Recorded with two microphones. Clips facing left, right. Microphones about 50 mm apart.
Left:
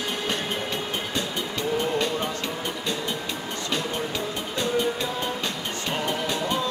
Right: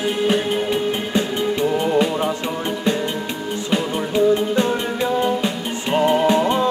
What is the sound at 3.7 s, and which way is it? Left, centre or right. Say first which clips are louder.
Music: right 9 dB; right.